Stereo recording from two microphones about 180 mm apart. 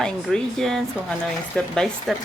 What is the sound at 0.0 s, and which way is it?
Speech, centre (ahead or behind).